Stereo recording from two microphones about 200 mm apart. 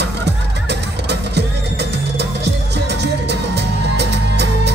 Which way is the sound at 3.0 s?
55° right (ahead or behind).